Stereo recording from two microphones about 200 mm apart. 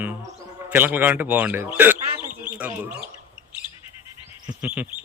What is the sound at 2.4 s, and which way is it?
Bird, 10° right (ahead or behind).